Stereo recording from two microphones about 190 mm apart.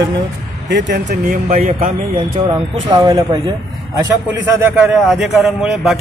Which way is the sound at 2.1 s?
25° right (ahead or behind).